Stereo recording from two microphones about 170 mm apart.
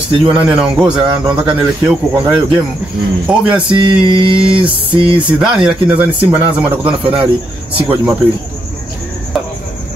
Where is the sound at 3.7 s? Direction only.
30° right (ahead or behind).